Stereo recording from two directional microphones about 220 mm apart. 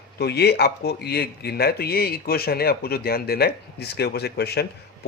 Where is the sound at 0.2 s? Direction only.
50° left (ahead or behind).